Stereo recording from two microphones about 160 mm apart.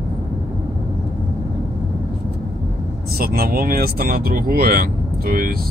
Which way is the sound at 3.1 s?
70° right (ahead or behind).